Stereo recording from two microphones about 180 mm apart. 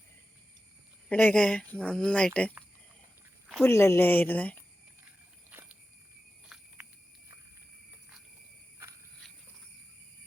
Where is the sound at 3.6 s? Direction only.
15° left (ahead or behind).